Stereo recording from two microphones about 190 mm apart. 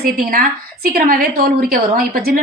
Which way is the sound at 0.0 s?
50° right (ahead or behind).